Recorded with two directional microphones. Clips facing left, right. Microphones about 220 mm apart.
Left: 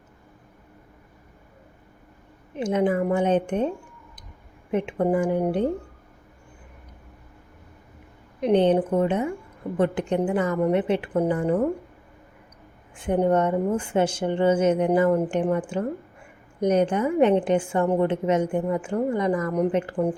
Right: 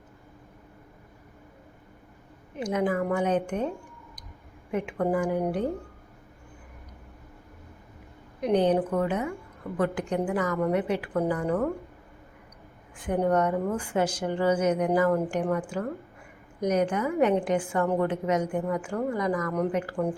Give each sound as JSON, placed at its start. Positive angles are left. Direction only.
{"t": 2.6, "sound": "speech", "side_deg": 25}
{"t": 4.7, "sound": "speech", "side_deg": 25}
{"t": 8.4, "sound": "speech", "side_deg": 25}
{"t": 13.0, "sound": "speech", "side_deg": 25}